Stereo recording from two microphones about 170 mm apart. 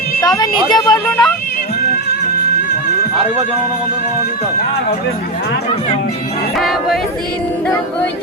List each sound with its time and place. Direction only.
0.2 s a woman's voice: 20° left (ahead or behind)
1.1 s speech: 15° left (ahead or behind)
6.6 s speech: centre (ahead or behind)